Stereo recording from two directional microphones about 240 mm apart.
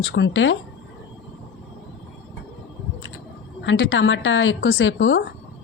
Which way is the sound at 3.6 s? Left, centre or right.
Left.